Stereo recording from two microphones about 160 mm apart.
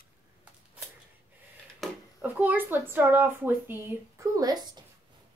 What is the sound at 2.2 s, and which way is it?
Speech, 10° right (ahead or behind).